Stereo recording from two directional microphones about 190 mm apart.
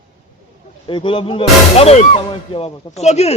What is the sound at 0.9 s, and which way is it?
A man's voice, 25° left (ahead or behind).